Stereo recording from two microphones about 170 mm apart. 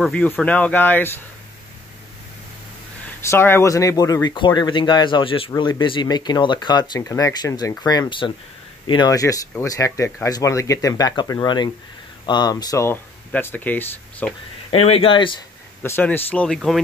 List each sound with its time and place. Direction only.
0.0 s speech: 5° left (ahead or behind)
3.2 s speech: 15° left (ahead or behind)
14.7 s speech: 35° left (ahead or behind)
15.8 s speech: 10° left (ahead or behind)